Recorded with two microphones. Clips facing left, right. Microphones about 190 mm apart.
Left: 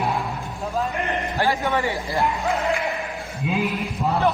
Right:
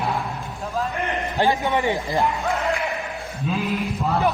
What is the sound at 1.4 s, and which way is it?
Speech, 15° right (ahead or behind).